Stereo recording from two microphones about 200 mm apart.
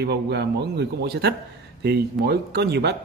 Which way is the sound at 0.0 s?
55° right (ahead or behind).